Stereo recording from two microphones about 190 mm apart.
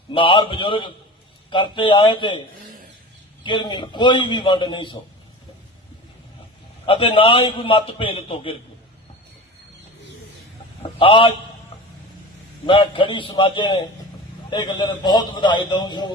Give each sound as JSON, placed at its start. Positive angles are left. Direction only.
{"t": 0.1, "sound": "a man's voice", "side_deg": 25}
{"t": 3.4, "sound": "a man's voice", "side_deg": 25}
{"t": 6.8, "sound": "a man's voice", "side_deg": 30}
{"t": 11.0, "sound": "a man's voice", "side_deg": 30}
{"t": 12.6, "sound": "a man's voice", "side_deg": 25}